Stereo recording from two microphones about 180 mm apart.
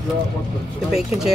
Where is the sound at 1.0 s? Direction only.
Centre (ahead or behind).